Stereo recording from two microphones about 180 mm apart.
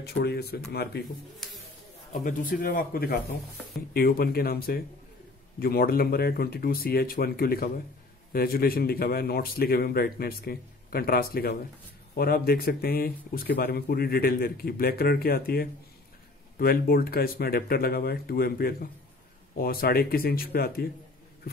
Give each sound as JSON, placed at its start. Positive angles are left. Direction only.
{"t": 0.0, "sound": "speech", "side_deg": 65}
{"t": 1.4, "sound": "a sound", "side_deg": 0}
{"t": 2.1, "sound": "a man's voice", "side_deg": 45}